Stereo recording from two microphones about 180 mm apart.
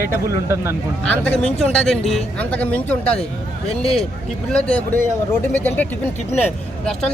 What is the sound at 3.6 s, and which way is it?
Speech, 30° left (ahead or behind).